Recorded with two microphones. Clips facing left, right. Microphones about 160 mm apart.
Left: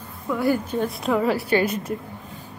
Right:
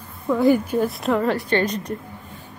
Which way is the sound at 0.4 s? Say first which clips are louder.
Right 5 dB; 20° right (ahead or behind).